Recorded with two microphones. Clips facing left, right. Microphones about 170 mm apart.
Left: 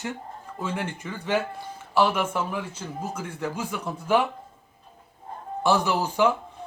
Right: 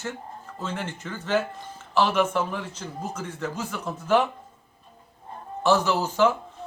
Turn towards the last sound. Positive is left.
turn(degrees=15)  # may be behind; listen again after turning